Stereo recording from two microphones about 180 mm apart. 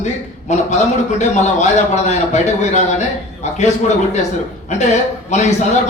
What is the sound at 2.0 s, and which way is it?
A man's voice, 40° left (ahead or behind).